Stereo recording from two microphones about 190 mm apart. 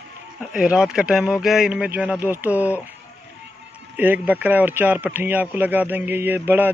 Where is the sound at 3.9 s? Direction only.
10° right (ahead or behind).